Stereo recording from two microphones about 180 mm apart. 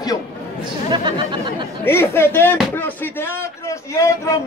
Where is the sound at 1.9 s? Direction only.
15° left (ahead or behind).